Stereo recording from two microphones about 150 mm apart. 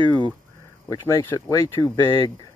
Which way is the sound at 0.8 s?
20° left (ahead or behind).